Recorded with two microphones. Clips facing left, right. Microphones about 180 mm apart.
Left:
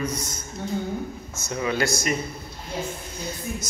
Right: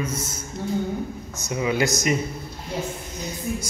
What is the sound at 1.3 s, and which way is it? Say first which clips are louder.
Speech: right 2 dB; 15° right (ahead or behind).